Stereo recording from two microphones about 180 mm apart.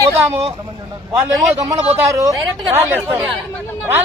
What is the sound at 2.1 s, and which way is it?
Speech, 20° right (ahead or behind).